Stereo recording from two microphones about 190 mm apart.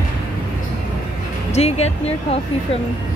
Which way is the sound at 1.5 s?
35° left (ahead or behind).